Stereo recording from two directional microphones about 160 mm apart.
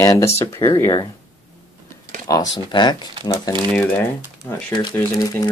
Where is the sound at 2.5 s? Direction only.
25° left (ahead or behind).